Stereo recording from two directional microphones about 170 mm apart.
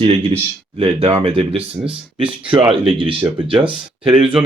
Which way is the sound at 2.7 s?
30° right (ahead or behind).